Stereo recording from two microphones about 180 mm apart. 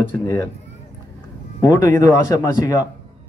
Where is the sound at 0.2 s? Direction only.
15° left (ahead or behind).